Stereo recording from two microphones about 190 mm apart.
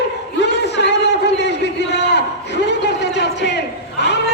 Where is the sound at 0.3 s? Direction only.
65° left (ahead or behind).